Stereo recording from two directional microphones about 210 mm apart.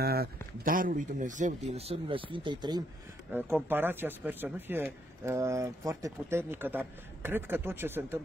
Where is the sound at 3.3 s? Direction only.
10° right (ahead or behind).